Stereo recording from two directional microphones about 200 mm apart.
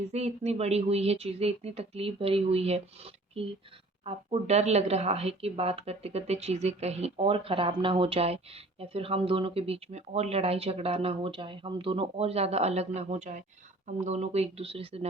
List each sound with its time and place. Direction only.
0.1 s speech: 35° right (ahead or behind)